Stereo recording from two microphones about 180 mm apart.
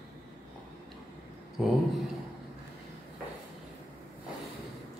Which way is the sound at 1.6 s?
Centre (ahead or behind).